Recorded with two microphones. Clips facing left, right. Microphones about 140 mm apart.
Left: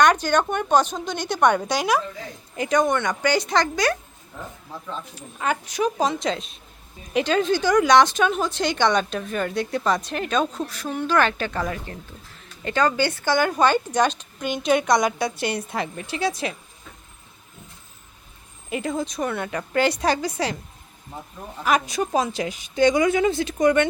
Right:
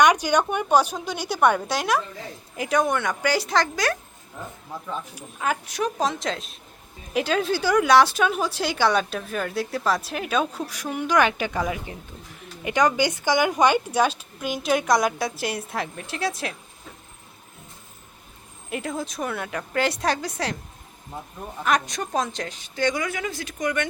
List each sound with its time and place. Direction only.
0.0 s speech: 10° right (ahead or behind)
18.7 s speech: centre (ahead or behind)
21.6 s speech: 5° left (ahead or behind); by 23.9 s 30° left (ahead or behind)